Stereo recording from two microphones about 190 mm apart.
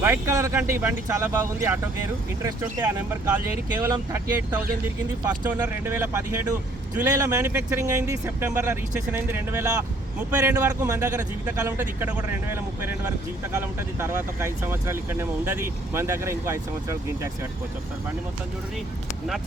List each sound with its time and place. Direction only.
0.0 s speech: 15° right (ahead or behind)
5.5 s speech: 10° right (ahead or behind)